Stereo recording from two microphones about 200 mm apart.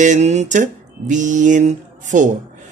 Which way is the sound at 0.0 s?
35° right (ahead or behind).